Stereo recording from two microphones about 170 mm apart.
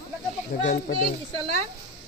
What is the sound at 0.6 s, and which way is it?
Speech, 65° left (ahead or behind).